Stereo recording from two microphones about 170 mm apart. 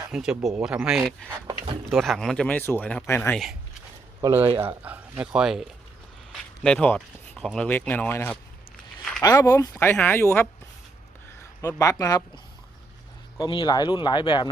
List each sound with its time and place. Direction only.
0.1 s speech: 5° right (ahead or behind)
4.2 s speech: 15° right (ahead or behind)
6.3 s a sound: 5° left (ahead or behind)
7.3 s speech: 5° left (ahead or behind)
11.8 s speech: 20° left (ahead or behind)
13.4 s speech: 25° left (ahead or behind)